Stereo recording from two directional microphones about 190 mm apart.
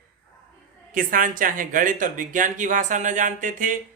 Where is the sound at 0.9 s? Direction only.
45° right (ahead or behind).